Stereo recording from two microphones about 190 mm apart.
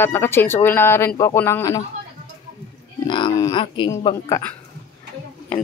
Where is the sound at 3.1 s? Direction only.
25° left (ahead or behind).